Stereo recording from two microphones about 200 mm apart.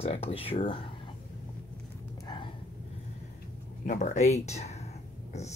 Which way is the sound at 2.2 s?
25° left (ahead or behind).